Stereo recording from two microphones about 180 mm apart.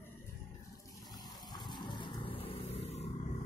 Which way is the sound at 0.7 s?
20° left (ahead or behind).